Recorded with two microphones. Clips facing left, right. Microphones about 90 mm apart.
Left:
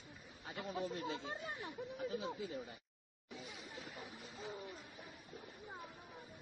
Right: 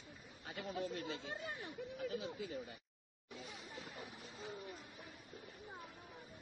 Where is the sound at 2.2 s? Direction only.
20° left (ahead or behind).